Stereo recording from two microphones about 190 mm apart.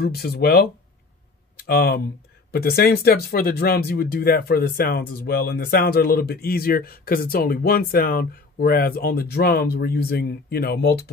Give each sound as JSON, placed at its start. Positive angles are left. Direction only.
{"t": 0.0, "sound": "speech", "side_deg": 55}